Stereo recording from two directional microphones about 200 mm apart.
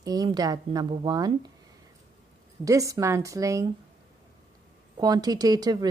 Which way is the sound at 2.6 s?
15° right (ahead or behind).